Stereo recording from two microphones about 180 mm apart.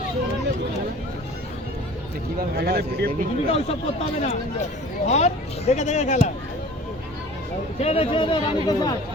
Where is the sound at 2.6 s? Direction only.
60° right (ahead or behind).